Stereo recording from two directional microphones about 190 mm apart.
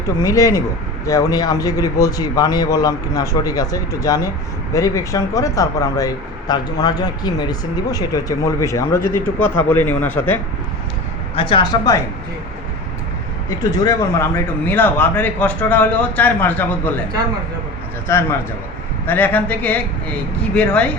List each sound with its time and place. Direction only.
0.2 s speech: 15° left (ahead or behind)
11.3 s speech: 25° left (ahead or behind)
13.6 s speech: 20° left (ahead or behind)
19.0 s speech: 10° left (ahead or behind)